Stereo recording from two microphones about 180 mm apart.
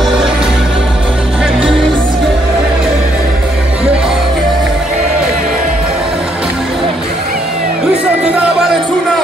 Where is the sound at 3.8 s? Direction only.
5° right (ahead or behind).